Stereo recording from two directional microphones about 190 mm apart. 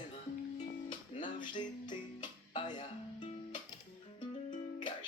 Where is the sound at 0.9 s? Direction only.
25° left (ahead or behind).